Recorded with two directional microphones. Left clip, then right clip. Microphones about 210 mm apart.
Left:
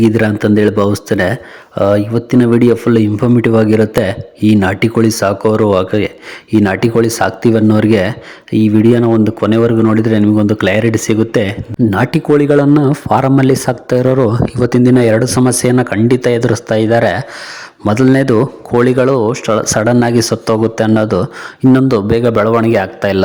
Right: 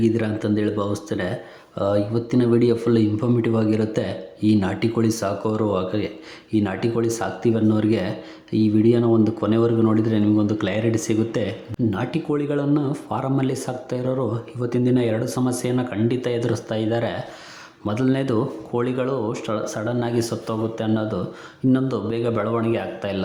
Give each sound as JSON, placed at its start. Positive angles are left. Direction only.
{"t": 0.0, "sound": "speech", "side_deg": 40}